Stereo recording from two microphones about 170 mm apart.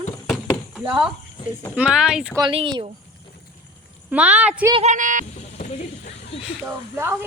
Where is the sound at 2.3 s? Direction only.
30° right (ahead or behind).